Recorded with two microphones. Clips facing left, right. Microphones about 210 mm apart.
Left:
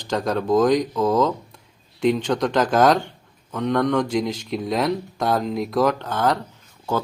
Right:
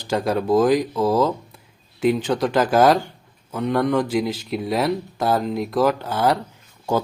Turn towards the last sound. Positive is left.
turn(degrees=-15)  # may be behind; listen again after turning